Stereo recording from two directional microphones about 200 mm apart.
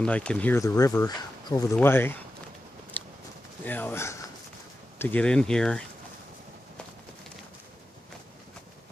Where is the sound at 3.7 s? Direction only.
10° left (ahead or behind).